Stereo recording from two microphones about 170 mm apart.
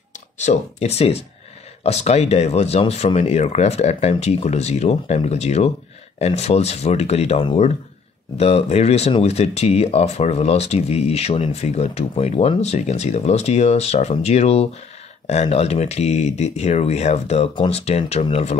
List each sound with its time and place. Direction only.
0.4 s speech: 40° left (ahead or behind)